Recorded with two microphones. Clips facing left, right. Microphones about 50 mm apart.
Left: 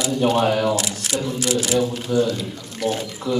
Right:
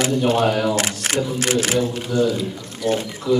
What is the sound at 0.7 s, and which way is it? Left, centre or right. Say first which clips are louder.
Speech: right 2 dB; right.